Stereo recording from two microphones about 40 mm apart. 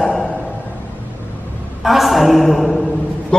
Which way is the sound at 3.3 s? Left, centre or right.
Centre.